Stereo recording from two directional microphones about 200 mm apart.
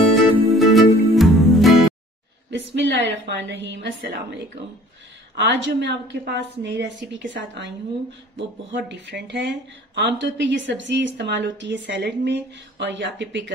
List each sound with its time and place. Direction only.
0.1 s music: centre (ahead or behind)
2.7 s a woman's voice: 60° right (ahead or behind)